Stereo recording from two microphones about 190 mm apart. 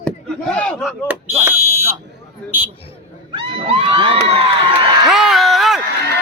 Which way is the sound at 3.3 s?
30° right (ahead or behind).